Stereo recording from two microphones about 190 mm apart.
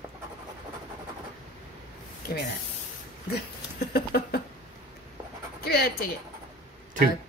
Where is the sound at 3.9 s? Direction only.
55° left (ahead or behind).